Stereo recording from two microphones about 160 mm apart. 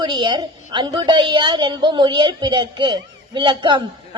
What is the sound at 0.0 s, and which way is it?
A woman's voice, 30° right (ahead or behind).